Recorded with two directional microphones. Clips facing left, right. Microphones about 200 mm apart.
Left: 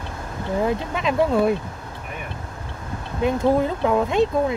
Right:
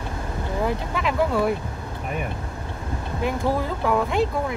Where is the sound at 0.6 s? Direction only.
20° left (ahead or behind).